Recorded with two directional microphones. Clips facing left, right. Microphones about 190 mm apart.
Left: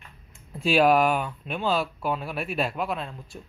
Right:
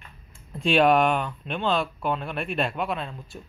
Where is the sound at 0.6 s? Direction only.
5° left (ahead or behind).